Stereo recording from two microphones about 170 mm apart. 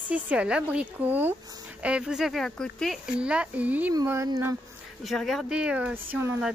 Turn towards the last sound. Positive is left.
turn(degrees=-10)  # may be behind; listen again after turning